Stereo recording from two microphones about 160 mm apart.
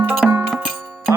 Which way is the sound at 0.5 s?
Centre (ahead or behind).